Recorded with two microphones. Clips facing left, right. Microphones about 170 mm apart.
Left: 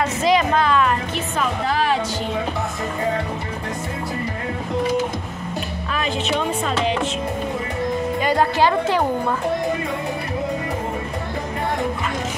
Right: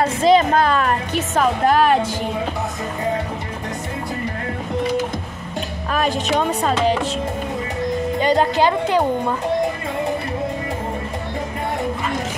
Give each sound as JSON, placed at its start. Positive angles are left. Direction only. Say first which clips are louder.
{"t": 0.0, "sound": "music", "louder": "right 4 dB", "side_deg": -30}
{"t": 5.9, "sound": "speech", "louder": "right 4 dB", "side_deg": -40}
{"t": 8.2, "sound": "a woman's voice", "louder": "right 2 dB", "side_deg": -25}